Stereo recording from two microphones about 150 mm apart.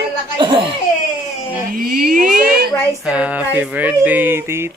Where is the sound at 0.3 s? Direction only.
35° right (ahead or behind).